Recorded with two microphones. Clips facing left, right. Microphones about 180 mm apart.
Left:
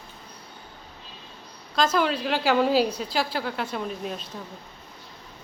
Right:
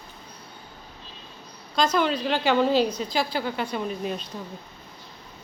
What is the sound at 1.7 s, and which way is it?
A woman's voice, 5° left (ahead or behind).